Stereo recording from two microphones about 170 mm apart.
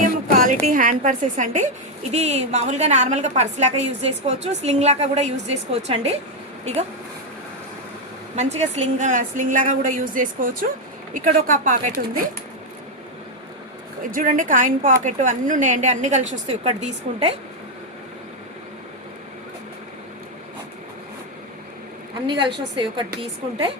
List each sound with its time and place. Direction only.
0.0 s a woman's voice: 50° right (ahead or behind)
8.4 s a woman's voice: 40° right (ahead or behind)
14.0 s a woman's voice: 55° right (ahead or behind)
22.5 s a woman's voice: 30° right (ahead or behind)